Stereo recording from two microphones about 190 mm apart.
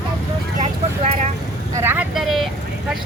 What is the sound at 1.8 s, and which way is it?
Speech, 10° right (ahead or behind).